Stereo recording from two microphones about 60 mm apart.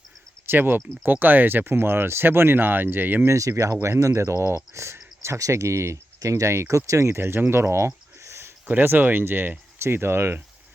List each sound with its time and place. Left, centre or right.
0.4 s speech: right
3.2 s speech: right
5.4 s speech: right
6.1 s speech: right
7.5 s a sound: right
8.6 s speech: right